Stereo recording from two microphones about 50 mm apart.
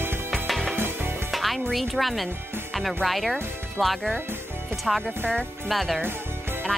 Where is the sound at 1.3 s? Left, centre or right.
Centre.